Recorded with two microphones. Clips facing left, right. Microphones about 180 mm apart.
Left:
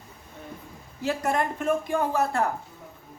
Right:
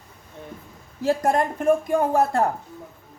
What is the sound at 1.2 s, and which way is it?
Speech, 45° right (ahead or behind).